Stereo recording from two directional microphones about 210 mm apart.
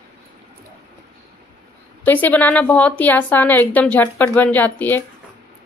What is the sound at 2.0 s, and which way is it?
A woman's voice, 10° left (ahead or behind).